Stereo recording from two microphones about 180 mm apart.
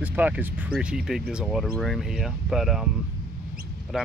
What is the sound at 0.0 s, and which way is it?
Speech, 10° right (ahead or behind).